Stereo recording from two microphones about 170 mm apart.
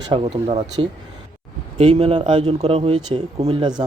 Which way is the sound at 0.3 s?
40° right (ahead or behind).